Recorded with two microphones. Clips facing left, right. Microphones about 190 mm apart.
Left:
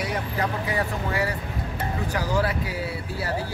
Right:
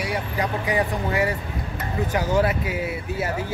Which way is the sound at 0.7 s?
20° right (ahead or behind).